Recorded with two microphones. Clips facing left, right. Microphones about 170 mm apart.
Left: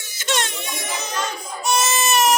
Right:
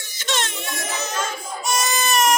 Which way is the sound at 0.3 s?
Centre (ahead or behind).